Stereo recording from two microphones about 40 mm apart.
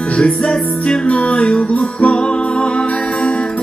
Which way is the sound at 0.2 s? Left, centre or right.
Left.